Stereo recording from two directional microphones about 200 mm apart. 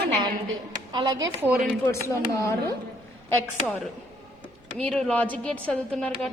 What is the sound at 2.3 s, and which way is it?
Speech, 15° left (ahead or behind).